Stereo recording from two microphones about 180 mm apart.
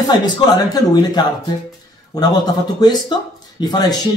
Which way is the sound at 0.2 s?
20° left (ahead or behind).